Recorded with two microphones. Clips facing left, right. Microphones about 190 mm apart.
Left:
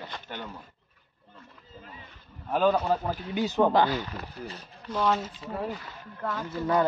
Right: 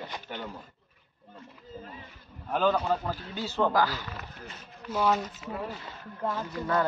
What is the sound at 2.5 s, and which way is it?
Speech, 5° left (ahead or behind).